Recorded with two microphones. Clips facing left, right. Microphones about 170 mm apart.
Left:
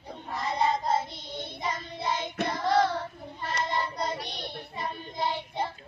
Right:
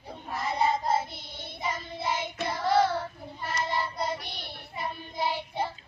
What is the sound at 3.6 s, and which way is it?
Child singing, 5° right (ahead or behind).